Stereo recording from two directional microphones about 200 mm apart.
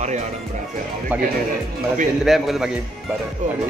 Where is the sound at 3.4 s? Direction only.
40° right (ahead or behind).